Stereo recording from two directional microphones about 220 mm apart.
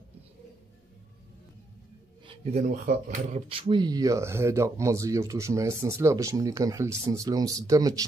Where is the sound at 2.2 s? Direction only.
25° right (ahead or behind).